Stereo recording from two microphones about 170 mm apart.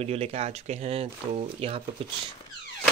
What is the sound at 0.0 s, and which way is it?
Speech, 35° right (ahead or behind).